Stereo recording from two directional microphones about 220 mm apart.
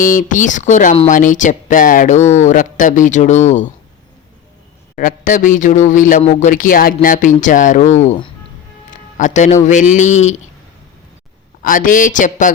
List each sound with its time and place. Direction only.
0.0 s speech: 35° left (ahead or behind)
4.9 s speech: 35° left (ahead or behind)
8.9 s music: 35° left (ahead or behind)
9.6 s speech: 35° left (ahead or behind)
11.6 s speech: 40° left (ahead or behind)